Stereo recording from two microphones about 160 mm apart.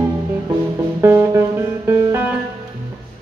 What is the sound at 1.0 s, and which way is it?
Music, 15° right (ahead or behind).